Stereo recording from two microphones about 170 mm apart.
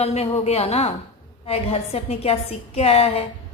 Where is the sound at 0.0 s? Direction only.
35° left (ahead or behind).